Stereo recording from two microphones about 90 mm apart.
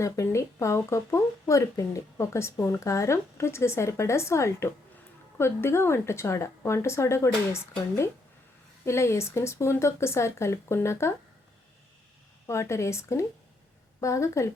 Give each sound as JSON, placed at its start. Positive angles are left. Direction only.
{"t": 0.0, "sound": "speech", "side_deg": 35}
{"t": 12.5, "sound": "speech", "side_deg": 30}